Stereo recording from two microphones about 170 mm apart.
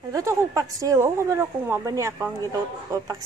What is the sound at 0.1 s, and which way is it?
A woman's voice, 15° right (ahead or behind).